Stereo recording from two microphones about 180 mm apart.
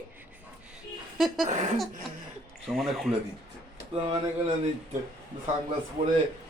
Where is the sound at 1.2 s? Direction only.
Centre (ahead or behind).